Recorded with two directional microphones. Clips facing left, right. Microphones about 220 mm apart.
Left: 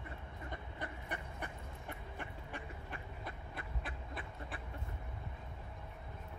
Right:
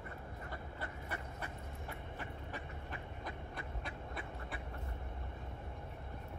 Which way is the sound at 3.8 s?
Centre (ahead or behind).